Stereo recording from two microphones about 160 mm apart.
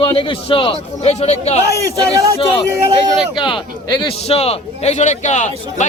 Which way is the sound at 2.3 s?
35° left (ahead or behind).